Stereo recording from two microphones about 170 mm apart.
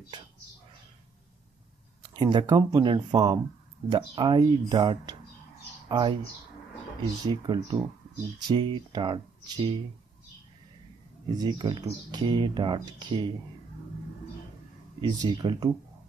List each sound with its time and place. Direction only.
2.0 s speech: 25° right (ahead or behind)
7.2 s speech: 25° right (ahead or behind)
11.2 s speech: 25° right (ahead or behind)
15.0 s speech: 25° right (ahead or behind)